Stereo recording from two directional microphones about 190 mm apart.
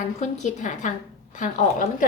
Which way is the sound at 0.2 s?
40° left (ahead or behind).